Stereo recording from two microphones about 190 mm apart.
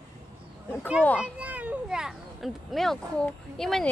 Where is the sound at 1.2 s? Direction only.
10° right (ahead or behind).